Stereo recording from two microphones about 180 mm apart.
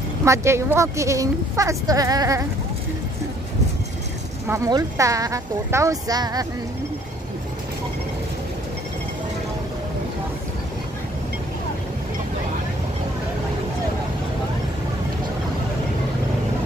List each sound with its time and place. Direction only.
0.2 s speech: 15° right (ahead or behind)
4.5 s speech: 20° right (ahead or behind)